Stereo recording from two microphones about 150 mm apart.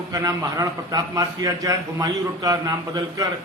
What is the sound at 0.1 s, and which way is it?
A man's voice, 25° right (ahead or behind).